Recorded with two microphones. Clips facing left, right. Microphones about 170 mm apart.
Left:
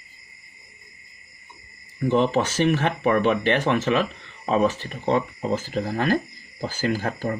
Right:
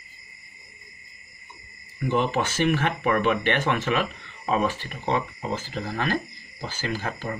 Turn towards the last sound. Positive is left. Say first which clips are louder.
# left 5 dB
turn(degrees=45)  # may be behind; listen again after turning